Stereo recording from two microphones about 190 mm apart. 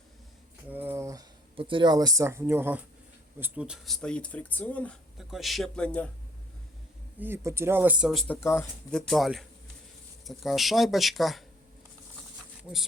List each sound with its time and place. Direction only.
0.7 s a sound: 10° right (ahead or behind)
1.5 s speech: 25° right (ahead or behind); by 6.1 s 5° left (ahead or behind)
7.2 s speech: 10° right (ahead or behind)